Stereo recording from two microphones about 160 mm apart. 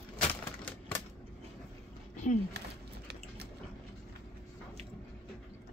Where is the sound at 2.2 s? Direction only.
50° left (ahead or behind).